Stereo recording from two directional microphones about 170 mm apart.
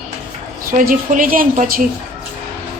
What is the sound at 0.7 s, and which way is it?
Speech, 55° right (ahead or behind).